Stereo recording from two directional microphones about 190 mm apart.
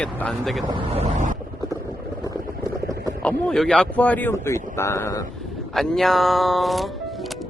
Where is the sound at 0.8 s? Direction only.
35° right (ahead or behind).